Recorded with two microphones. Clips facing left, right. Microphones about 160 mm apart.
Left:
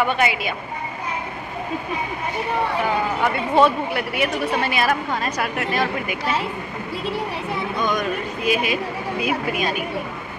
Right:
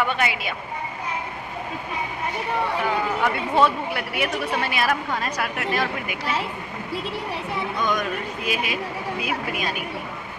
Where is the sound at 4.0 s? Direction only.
5° right (ahead or behind).